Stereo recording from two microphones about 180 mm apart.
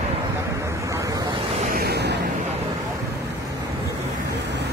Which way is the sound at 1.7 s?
60° right (ahead or behind).